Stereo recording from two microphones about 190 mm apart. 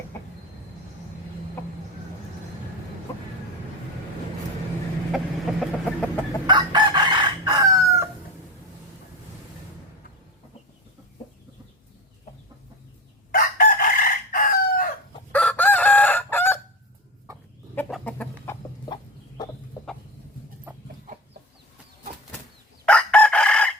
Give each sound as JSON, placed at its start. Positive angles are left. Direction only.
{"t": 5.1, "sound": "chicken", "side_deg": 0}
{"t": 6.5, "sound": "chicken", "side_deg": -25}
{"t": 13.3, "sound": "chicken", "side_deg": 50}
{"t": 15.3, "sound": "chicken", "side_deg": 5}
{"t": 17.7, "sound": "chicken", "side_deg": 5}
{"t": 21.1, "sound": "chicken", "side_deg": -45}
{"t": 22.9, "sound": "chicken", "side_deg": 5}